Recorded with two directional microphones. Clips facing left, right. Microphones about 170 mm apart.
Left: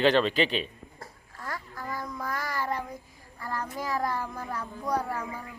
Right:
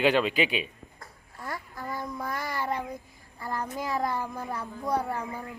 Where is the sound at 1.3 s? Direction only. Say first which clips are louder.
Right 1 dB; 25° right (ahead or behind).